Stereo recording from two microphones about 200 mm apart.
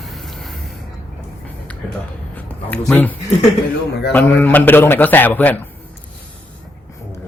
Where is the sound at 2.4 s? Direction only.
10° left (ahead or behind).